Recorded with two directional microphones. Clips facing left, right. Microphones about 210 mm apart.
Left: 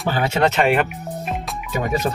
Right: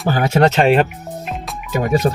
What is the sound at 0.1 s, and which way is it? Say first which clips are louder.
Speech: right 4 dB; 40° right (ahead or behind).